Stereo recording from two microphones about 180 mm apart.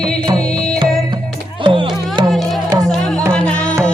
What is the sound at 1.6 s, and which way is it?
Music, 30° right (ahead or behind).